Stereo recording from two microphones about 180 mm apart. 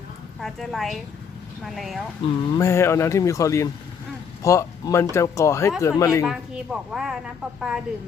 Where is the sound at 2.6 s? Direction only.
15° left (ahead or behind).